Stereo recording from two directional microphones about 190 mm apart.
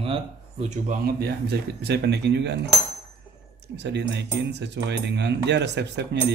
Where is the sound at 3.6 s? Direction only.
65° right (ahead or behind).